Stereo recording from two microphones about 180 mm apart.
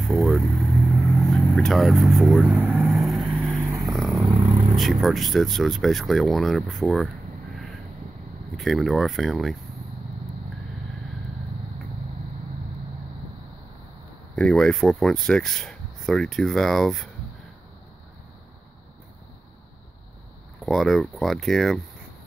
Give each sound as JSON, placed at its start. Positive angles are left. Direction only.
{"t": 0.0, "sound": "vehicle", "side_deg": 0}
{"t": 4.3, "sound": "vehicle", "side_deg": -20}
{"t": 4.7, "sound": "speech", "side_deg": 0}
{"t": 8.5, "sound": "speech", "side_deg": 0}
{"t": 14.3, "sound": "speech", "side_deg": 5}
{"t": 20.6, "sound": "speech", "side_deg": 0}